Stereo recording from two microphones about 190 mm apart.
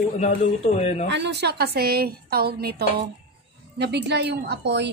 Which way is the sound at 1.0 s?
65° right (ahead or behind).